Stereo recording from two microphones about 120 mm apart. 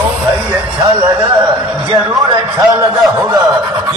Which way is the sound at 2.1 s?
30° right (ahead or behind).